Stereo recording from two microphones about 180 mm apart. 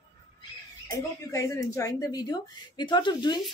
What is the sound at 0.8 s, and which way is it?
A woman's voice, 20° left (ahead or behind).